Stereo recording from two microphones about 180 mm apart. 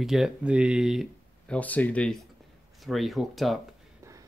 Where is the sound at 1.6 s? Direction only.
10° left (ahead or behind).